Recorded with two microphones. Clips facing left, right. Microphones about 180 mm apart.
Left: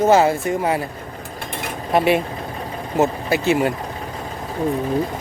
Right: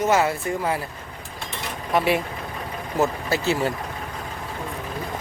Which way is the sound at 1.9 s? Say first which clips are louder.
Left 4 dB; 25° left (ahead or behind).